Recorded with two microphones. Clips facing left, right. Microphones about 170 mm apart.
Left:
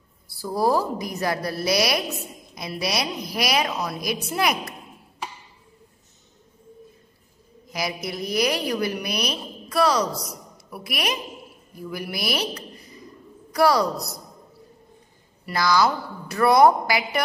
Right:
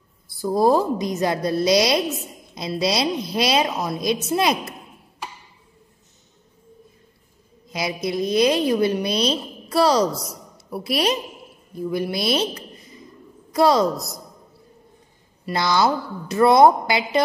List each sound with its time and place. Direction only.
0.4 s a woman's voice: 20° right (ahead or behind)
7.6 s a woman's voice: 20° right (ahead or behind)
15.4 s a woman's voice: 25° right (ahead or behind)